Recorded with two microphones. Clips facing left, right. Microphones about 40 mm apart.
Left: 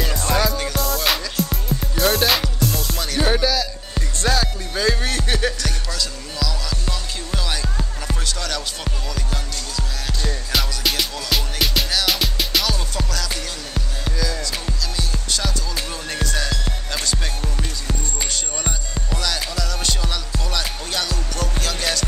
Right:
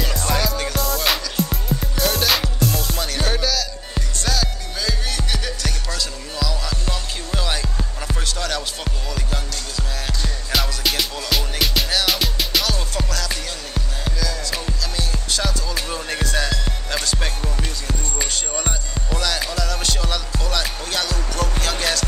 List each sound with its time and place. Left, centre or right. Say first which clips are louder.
0.3 s music: left 2 dB; centre
3.3 s music: left 3 dB; centre
4.2 s music: left 4 dB; left
5.6 s music: even; centre